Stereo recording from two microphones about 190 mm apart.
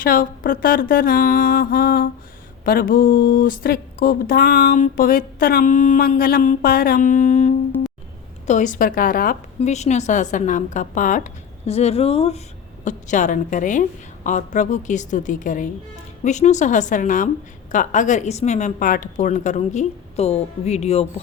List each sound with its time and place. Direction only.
0.0 s speech: 50° left (ahead or behind)
9.6 s a woman's voice: 35° left (ahead or behind)